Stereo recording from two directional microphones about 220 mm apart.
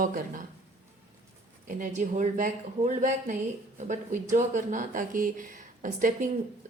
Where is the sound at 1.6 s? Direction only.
35° right (ahead or behind).